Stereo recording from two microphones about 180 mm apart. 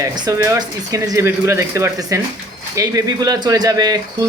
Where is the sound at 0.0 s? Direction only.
20° right (ahead or behind).